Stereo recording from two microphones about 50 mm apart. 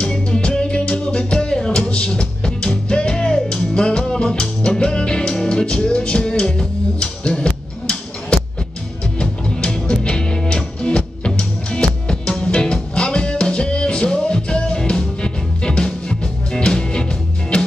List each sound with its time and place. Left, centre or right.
0.0 s music: centre